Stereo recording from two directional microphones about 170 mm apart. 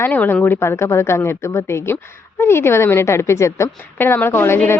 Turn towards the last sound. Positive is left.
turn(degrees=15)  # may be behind; listen again after turning